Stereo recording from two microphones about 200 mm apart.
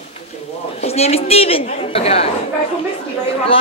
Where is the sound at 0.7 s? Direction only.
30° left (ahead or behind).